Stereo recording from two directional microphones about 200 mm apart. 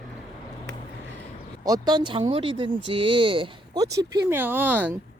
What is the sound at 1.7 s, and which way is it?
Speech, 20° right (ahead or behind).